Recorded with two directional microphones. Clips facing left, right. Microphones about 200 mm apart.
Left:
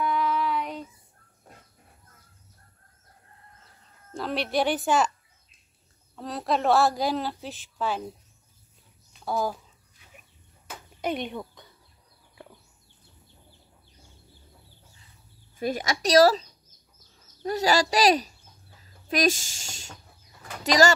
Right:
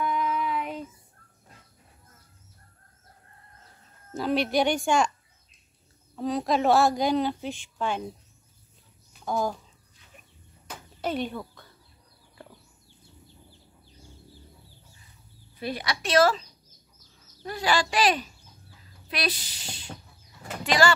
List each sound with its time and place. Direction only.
0.0 s child singing: centre (ahead or behind)
4.1 s a woman's voice: centre (ahead or behind)
6.1 s a woman's voice: centre (ahead or behind)
9.2 s speech: 5° left (ahead or behind)
11.0 s speech: 15° left (ahead or behind)
15.5 s a woman's voice: 45° left (ahead or behind)
17.5 s a woman's voice: 40° left (ahead or behind)